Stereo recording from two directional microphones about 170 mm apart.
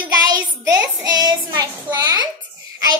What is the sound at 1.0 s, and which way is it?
A child's voice, 25° right (ahead or behind).